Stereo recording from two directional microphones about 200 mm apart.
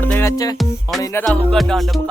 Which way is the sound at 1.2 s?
Centre (ahead or behind).